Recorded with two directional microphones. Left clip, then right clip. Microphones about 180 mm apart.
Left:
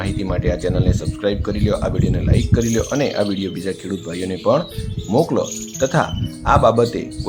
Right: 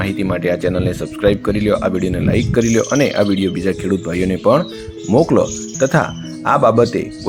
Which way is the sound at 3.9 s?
35° right (ahead or behind).